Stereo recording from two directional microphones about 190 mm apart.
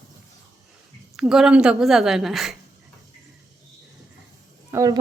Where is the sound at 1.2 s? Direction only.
5° right (ahead or behind).